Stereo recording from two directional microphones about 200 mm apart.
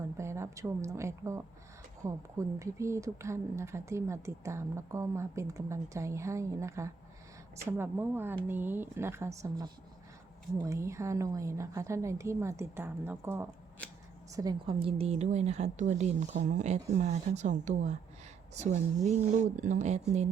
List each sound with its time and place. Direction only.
0.2 s a woman's voice: 15° right (ahead or behind)
14.3 s a woman's voice: 20° right (ahead or behind)